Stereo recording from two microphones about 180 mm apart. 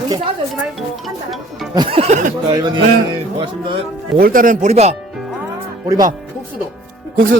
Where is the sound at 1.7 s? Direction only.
35° right (ahead or behind).